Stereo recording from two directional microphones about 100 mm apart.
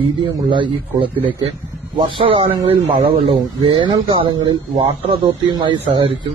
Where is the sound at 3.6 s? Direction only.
55° right (ahead or behind).